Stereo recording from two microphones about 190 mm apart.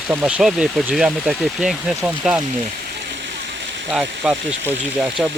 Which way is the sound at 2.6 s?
45° right (ahead or behind).